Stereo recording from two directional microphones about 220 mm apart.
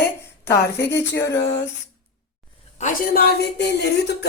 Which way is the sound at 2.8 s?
35° left (ahead or behind).